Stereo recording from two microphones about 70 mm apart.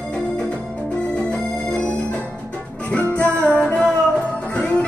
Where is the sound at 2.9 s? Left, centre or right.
Centre.